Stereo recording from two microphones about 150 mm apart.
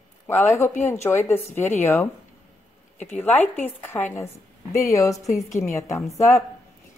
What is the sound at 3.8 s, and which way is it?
A woman's voice, 15° left (ahead or behind).